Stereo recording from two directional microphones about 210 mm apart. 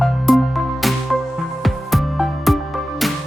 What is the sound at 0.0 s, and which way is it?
Music, centre (ahead or behind).